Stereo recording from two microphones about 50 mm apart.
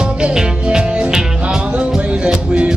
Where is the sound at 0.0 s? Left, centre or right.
Centre.